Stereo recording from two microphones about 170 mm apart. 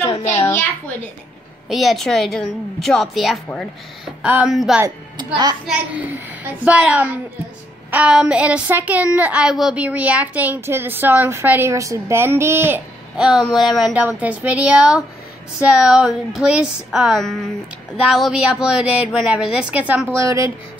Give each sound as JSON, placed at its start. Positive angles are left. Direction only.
{"t": 1.7, "sound": "a woman's voice", "side_deg": 0}
{"t": 4.8, "sound": "speech", "side_deg": -25}
{"t": 5.7, "sound": "a woman's voice", "side_deg": -10}